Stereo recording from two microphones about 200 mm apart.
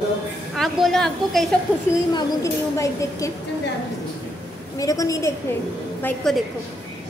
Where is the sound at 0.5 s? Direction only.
Centre (ahead or behind).